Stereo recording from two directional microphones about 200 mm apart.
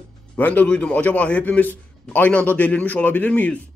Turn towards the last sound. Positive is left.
turn(degrees=5)  # may be behind; listen again after turning